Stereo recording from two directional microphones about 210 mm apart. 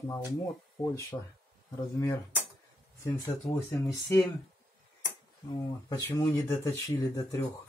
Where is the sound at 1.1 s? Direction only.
20° left (ahead or behind).